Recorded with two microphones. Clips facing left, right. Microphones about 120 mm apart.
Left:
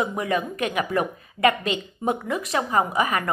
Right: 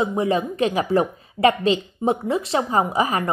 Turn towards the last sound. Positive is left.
turn(degrees=-30)  # may be behind; listen again after turning